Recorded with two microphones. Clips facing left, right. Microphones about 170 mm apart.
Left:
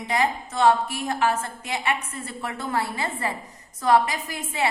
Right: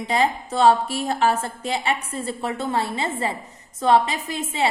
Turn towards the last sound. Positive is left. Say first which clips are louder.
# right 3 dB
turn(degrees=-25)  # may be behind; listen again after turning